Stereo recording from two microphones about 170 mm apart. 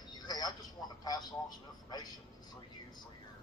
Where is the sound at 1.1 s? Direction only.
25° left (ahead or behind).